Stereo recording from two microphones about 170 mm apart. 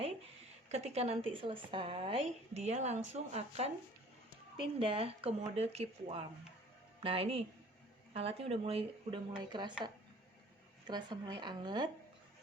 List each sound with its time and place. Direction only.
0.7 s a woman's voice: 40° right (ahead or behind)
4.8 s a woman's voice: 30° right (ahead or behind)
10.8 s speech: 25° right (ahead or behind)